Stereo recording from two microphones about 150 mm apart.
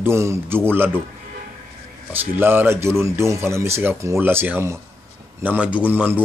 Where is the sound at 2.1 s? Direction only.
15° right (ahead or behind).